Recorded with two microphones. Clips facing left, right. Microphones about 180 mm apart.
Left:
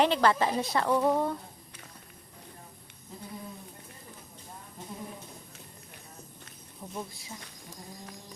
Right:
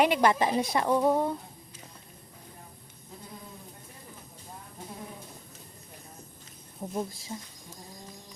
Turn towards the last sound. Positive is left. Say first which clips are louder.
# right 6 dB
turn(degrees=-35)  # may be behind; listen again after turning